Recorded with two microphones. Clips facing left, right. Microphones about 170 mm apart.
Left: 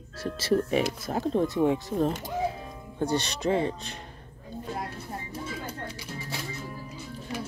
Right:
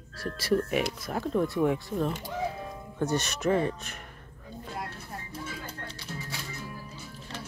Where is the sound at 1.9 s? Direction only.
40° left (ahead or behind).